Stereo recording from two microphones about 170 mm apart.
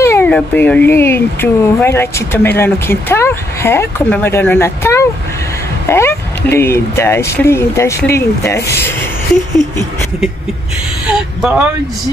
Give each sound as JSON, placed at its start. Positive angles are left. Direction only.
{"t": 0.0, "sound": "speech", "side_deg": 10}
{"t": 11.1, "sound": "speech", "side_deg": -5}